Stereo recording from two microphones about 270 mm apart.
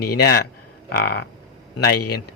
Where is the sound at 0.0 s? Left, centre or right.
Left.